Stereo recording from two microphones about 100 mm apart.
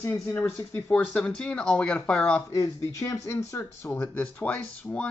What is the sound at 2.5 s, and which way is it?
Speech, 35° left (ahead or behind).